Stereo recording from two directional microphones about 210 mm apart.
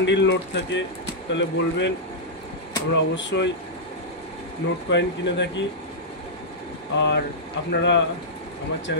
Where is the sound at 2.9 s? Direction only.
60° left (ahead or behind).